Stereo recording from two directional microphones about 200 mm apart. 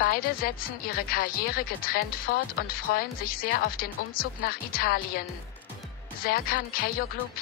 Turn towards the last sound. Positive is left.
turn(degrees=45)  # may be behind; listen again after turning